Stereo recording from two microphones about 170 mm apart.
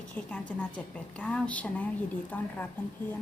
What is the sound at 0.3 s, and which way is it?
A woman's voice, 10° left (ahead or behind).